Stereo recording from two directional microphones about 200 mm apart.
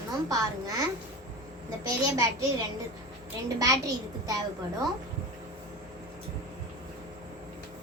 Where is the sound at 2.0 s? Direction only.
15° right (ahead or behind).